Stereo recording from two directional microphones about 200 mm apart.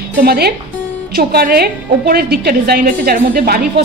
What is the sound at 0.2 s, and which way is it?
A woman's voice, 50° right (ahead or behind).